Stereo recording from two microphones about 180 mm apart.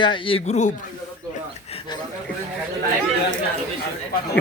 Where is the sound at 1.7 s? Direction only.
30° left (ahead or behind).